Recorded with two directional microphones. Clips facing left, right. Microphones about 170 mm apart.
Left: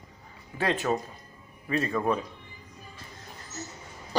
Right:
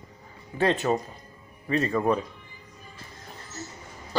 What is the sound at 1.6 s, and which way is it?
Speech, 30° right (ahead or behind).